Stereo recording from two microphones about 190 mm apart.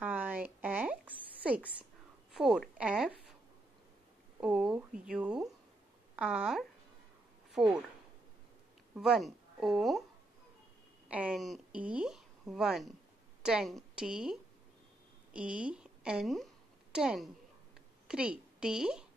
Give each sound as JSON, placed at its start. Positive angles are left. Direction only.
{"t": 0.0, "sound": "a sound", "side_deg": -10}
{"t": 2.3, "sound": "a woman's voice", "side_deg": -5}
{"t": 4.4, "sound": "a woman's voice", "side_deg": -5}
{"t": 8.9, "sound": "a woman's voice", "side_deg": -5}
{"t": 11.1, "sound": "a woman's voice", "side_deg": -5}